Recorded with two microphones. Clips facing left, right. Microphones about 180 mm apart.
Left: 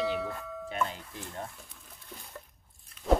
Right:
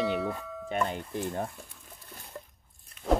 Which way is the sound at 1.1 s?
60° right (ahead or behind).